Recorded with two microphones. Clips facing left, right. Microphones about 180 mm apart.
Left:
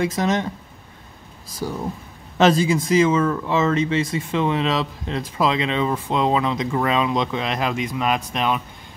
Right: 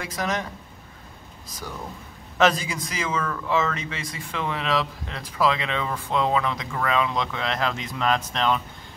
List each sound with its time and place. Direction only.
0.0 s speech: 25° left (ahead or behind)
1.6 s speech: 30° left (ahead or behind); by 8.6 s 15° left (ahead or behind)